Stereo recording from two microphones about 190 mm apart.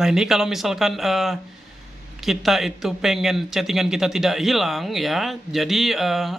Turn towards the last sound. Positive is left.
turn(degrees=0)  # may be behind; listen again after turning